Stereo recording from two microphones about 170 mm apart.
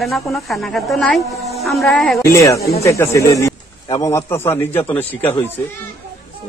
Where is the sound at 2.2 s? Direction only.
20° left (ahead or behind).